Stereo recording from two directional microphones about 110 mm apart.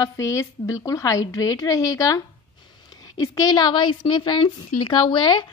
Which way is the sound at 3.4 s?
40° left (ahead or behind).